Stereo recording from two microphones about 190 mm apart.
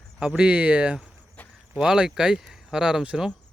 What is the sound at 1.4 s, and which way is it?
Cricket, 10° left (ahead or behind).